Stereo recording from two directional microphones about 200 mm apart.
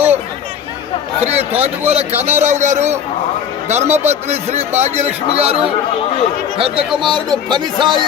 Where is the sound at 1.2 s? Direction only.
30° right (ahead or behind).